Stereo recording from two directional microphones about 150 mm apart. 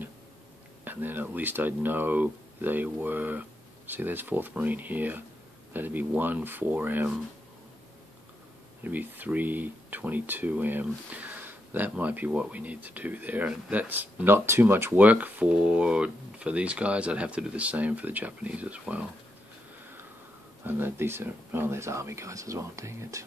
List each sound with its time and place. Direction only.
0.8 s speech: 10° right (ahead or behind)
8.8 s speech: 10° right (ahead or behind)
20.6 s speech: 15° right (ahead or behind)